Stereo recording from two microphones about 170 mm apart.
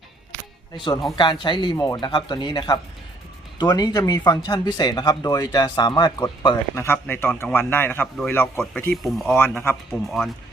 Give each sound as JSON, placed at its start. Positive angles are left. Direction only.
{"t": 1.1, "sound": "speech", "side_deg": 25}
{"t": 6.7, "sound": "a man's voice", "side_deg": 15}